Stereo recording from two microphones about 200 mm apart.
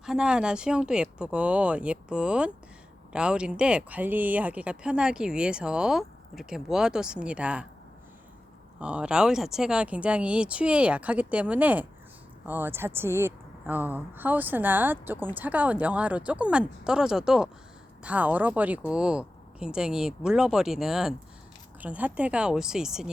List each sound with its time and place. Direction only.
0.0 s speech: 5° right (ahead or behind)
8.8 s a woman's voice: 5° right (ahead or behind)